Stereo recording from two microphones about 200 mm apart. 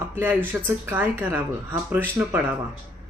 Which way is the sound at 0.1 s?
10° right (ahead or behind).